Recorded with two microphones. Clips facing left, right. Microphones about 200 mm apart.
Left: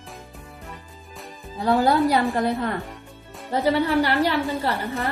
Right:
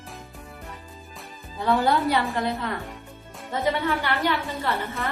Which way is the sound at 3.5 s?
35° left (ahead or behind).